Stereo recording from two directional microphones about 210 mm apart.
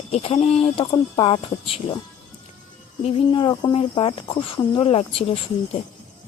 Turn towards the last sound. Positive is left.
turn(degrees=30)  # may be behind; listen again after turning